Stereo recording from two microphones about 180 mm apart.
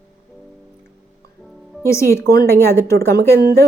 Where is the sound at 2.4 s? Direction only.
15° left (ahead or behind).